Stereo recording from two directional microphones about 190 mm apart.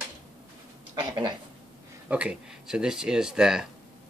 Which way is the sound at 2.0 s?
5° right (ahead or behind).